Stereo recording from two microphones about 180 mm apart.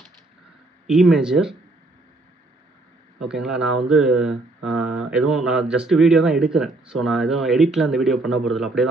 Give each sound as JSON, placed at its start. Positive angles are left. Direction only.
{"t": 0.8, "sound": "speech", "side_deg": -5}
{"t": 3.2, "sound": "speech", "side_deg": -5}